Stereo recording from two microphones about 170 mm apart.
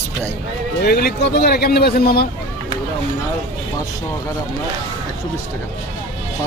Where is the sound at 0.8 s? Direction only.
70° left (ahead or behind).